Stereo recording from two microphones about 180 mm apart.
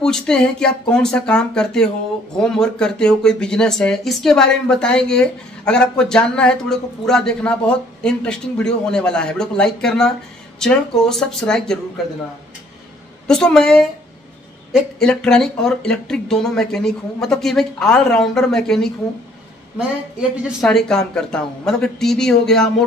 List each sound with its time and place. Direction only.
0.0 s speech: 5° left (ahead or behind)
13.3 s speech: 5° left (ahead or behind)
20.2 s speech: centre (ahead or behind)